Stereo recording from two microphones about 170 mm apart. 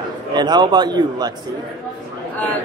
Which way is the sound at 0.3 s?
25° right (ahead or behind).